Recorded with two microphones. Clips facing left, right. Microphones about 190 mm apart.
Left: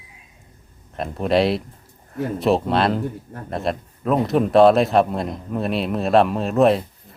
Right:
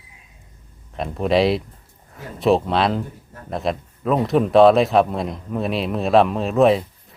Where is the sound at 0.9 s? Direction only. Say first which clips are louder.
Right 1 dB; centre (ahead or behind).